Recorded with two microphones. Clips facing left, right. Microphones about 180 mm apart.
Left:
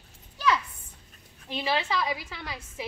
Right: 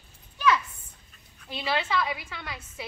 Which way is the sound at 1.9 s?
35° left (ahead or behind).